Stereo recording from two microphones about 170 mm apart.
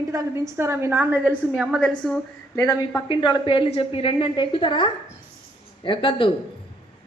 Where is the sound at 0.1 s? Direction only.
15° right (ahead or behind); by 2.2 s centre (ahead or behind).